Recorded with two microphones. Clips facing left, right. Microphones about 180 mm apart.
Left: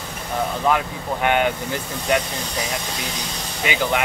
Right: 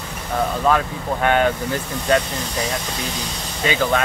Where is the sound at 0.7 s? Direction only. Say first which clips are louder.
Right 1 dB; 15° left (ahead or behind).